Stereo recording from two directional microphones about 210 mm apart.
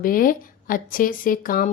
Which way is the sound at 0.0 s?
40° left (ahead or behind).